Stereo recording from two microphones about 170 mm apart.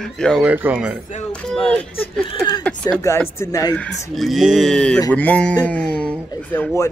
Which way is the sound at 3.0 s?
15° left (ahead or behind).